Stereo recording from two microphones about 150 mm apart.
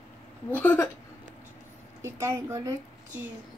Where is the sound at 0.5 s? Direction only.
10° left (ahead or behind).